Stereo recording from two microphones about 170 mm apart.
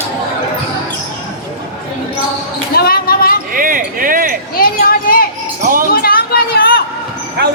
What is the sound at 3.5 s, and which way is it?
Basketball bounce, 55° right (ahead or behind).